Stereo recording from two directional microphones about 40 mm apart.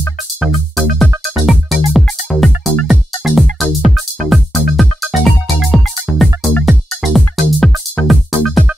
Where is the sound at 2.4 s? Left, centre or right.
Centre.